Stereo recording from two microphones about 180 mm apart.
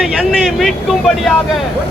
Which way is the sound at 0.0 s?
Centre (ahead or behind).